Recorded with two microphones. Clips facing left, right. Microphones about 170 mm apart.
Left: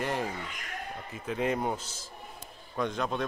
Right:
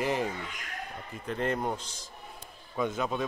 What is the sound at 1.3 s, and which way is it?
Speech, 5° left (ahead or behind).